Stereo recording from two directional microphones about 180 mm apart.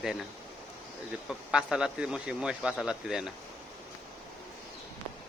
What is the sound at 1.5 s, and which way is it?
Speech, 5° right (ahead or behind).